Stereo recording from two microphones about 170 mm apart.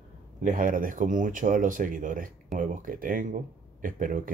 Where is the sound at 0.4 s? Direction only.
50° right (ahead or behind).